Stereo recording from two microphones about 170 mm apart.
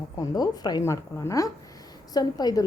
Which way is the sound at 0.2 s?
25° left (ahead or behind).